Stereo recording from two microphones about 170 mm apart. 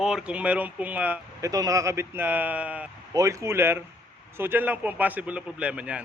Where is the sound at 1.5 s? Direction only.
20° right (ahead or behind).